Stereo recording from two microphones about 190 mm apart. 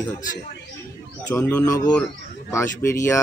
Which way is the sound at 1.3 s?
10° left (ahead or behind).